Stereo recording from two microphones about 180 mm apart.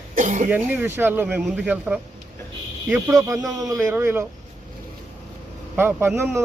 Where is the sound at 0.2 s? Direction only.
45° right (ahead or behind).